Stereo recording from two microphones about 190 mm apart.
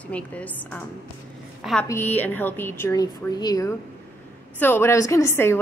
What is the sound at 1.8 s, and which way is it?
A woman's voice, 10° left (ahead or behind).